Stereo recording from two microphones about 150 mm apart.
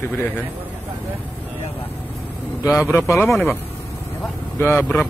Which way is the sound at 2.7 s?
15° left (ahead or behind).